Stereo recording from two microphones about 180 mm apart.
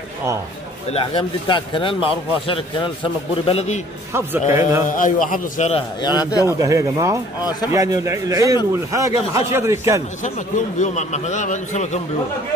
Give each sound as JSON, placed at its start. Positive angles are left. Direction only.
{"t": 0.8, "sound": "a man's voice", "side_deg": 30}
{"t": 4.5, "sound": "a man's voice", "side_deg": -15}
{"t": 4.8, "sound": "a man's voice", "side_deg": 50}
{"t": 5.9, "sound": "a man's voice", "side_deg": 25}
{"t": 6.4, "sound": "a man's voice", "side_deg": -20}
{"t": 10.2, "sound": "speech", "side_deg": 40}